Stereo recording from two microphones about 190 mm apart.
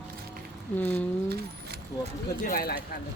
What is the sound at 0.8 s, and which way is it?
Speech, 10° left (ahead or behind).